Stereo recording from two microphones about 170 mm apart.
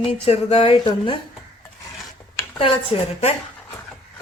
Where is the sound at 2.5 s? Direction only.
30° left (ahead or behind).